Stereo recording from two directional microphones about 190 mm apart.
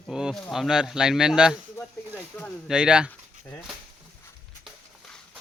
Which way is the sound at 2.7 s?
5° right (ahead or behind).